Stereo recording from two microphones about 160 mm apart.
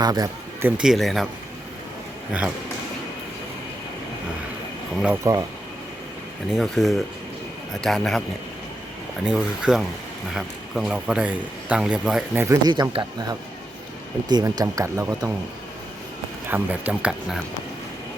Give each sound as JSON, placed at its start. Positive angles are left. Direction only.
{"t": 0.0, "sound": "speech", "side_deg": -25}
{"t": 0.8, "sound": "speech", "side_deg": 0}
{"t": 2.3, "sound": "speech", "side_deg": -5}
{"t": 5.2, "sound": "speech", "side_deg": -20}
{"t": 6.5, "sound": "speech", "side_deg": 0}
{"t": 9.2, "sound": "speech", "side_deg": -5}
{"t": 12.4, "sound": "speech", "side_deg": -20}
{"t": 16.5, "sound": "speech", "side_deg": -10}